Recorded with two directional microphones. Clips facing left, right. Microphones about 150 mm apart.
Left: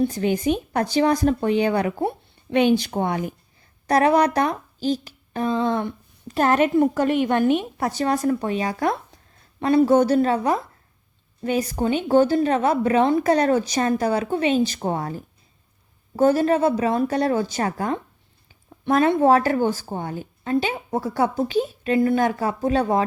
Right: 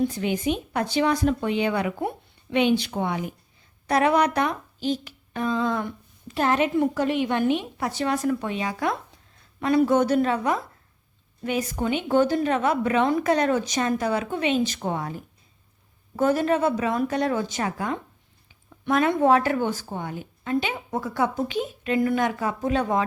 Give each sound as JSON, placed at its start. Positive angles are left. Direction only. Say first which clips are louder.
{"t": 0.1, "sound": "a woman's voice", "louder": "left 4 dB", "side_deg": 40}
{"t": 6.3, "sound": "a woman's voice", "louder": "left 4 dB", "side_deg": 50}